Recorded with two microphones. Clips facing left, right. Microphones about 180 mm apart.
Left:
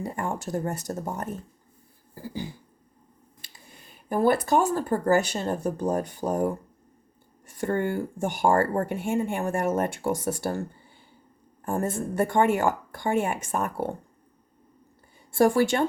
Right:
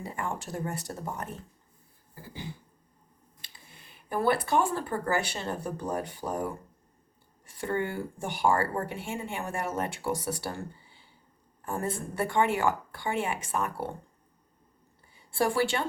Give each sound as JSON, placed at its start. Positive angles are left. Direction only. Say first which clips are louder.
{"t": 0.0, "sound": "speech", "louder": "left 5 dB", "side_deg": 40}
{"t": 4.1, "sound": "speech", "louder": "left 4 dB", "side_deg": 45}
{"t": 15.3, "sound": "speech", "louder": "left 6 dB", "side_deg": 45}